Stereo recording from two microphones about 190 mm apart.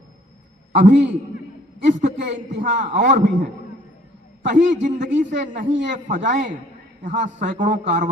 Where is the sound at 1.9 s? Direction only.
40° right (ahead or behind).